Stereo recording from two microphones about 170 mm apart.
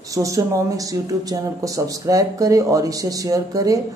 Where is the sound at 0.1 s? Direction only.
20° right (ahead or behind).